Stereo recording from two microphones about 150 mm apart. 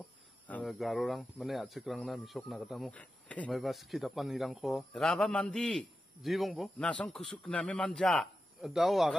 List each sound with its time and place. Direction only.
0.5 s speech: 5° left (ahead or behind)